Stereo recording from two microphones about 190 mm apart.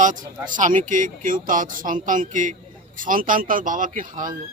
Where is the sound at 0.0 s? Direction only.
40° right (ahead or behind).